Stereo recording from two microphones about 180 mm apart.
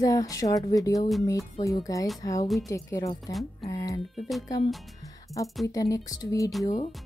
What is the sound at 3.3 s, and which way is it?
Speech, centre (ahead or behind).